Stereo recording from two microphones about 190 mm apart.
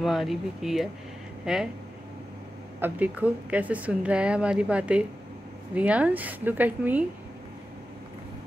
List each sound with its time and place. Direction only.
0.0 s speech: centre (ahead or behind)
2.8 s a woman's voice: 10° right (ahead or behind)